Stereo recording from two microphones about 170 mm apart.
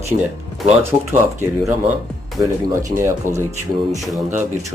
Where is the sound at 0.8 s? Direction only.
15° right (ahead or behind).